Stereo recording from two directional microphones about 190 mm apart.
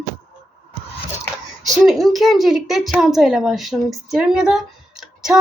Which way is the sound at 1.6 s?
Centre (ahead or behind).